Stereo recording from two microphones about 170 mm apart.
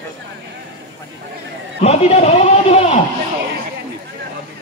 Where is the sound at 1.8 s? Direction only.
40° left (ahead or behind).